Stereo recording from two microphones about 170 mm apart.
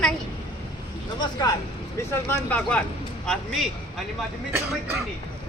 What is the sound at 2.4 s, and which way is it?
Speech, 10° left (ahead or behind).